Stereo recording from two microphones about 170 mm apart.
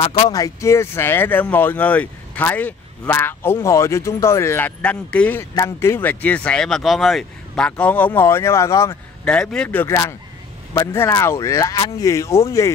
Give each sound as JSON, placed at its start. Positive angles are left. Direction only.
{"t": 0.3, "sound": "speech", "side_deg": 20}
{"t": 9.2, "sound": "speech", "side_deg": 5}